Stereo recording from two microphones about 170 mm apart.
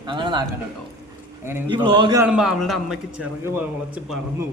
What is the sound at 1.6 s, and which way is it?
Speech, 25° right (ahead or behind).